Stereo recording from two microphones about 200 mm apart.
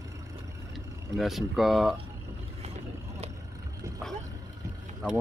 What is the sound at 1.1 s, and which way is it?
Speech, centre (ahead or behind).